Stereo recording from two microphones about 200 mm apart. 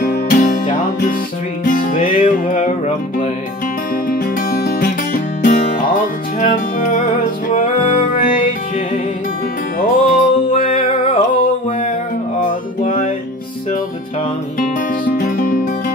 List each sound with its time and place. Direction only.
0.0 s music: 45° left (ahead or behind)
4.1 s music: 45° left (ahead or behind)
9.8 s music: 45° left (ahead or behind)
10.7 s music: 25° left (ahead or behind)
14.6 s music: 40° left (ahead or behind)